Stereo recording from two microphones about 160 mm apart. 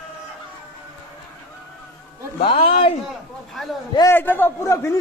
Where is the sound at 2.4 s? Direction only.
35° left (ahead or behind).